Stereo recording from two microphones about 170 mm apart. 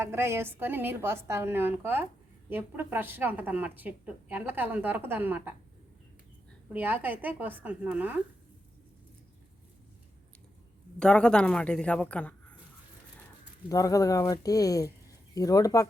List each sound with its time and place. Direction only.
0.0 s a woman's voice: 15° right (ahead or behind)
6.7 s a woman's voice: 10° right (ahead or behind)
11.0 s a woman's voice: 5° left (ahead or behind)
13.7 s speech: 20° left (ahead or behind)